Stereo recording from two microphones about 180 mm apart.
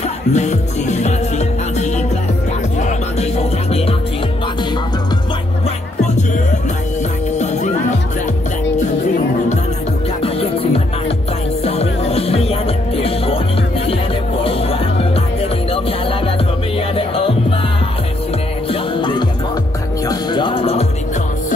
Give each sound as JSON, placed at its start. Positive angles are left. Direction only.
{"t": 0.3, "sound": "music", "side_deg": 40}
{"t": 7.3, "sound": "music", "side_deg": 40}
{"t": 10.2, "sound": "music", "side_deg": 30}
{"t": 14.4, "sound": "music", "side_deg": 30}
{"t": 16.9, "sound": "music", "side_deg": 30}
{"t": 18.7, "sound": "music", "side_deg": 25}